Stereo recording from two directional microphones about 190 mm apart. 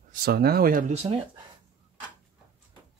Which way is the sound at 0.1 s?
55° right (ahead or behind).